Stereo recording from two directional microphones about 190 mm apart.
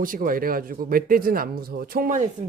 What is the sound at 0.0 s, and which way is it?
Speech, 45° right (ahead or behind).